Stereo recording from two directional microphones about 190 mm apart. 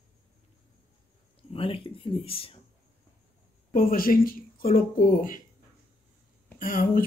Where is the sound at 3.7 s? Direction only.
50° left (ahead or behind).